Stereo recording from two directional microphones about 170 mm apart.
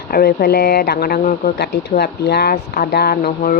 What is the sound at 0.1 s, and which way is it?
Speech, 65° left (ahead or behind).